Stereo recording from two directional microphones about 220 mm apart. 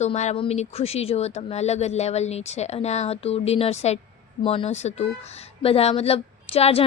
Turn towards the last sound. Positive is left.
turn(degrees=25)  # may be behind; listen again after turning